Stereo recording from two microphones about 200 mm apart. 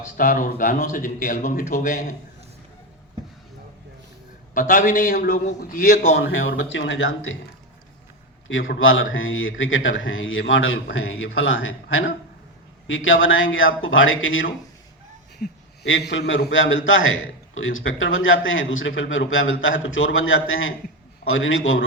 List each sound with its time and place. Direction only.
0.0 s speech: 45° left (ahead or behind)
4.5 s speech: 45° left (ahead or behind)
6.3 s a man's voice: 70° left (ahead or behind)
8.8 s a man's voice: 80° left
15.4 s a man's voice: 55° left (ahead or behind); by 21.8 s 80° left